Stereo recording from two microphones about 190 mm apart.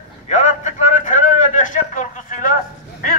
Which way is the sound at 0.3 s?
40° left (ahead or behind).